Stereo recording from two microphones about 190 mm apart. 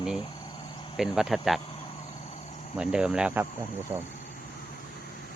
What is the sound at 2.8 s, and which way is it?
Speech, 5° right (ahead or behind).